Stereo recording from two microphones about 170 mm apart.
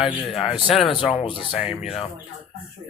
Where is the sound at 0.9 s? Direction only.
30° left (ahead or behind).